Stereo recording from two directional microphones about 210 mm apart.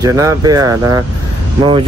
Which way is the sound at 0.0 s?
15° right (ahead or behind).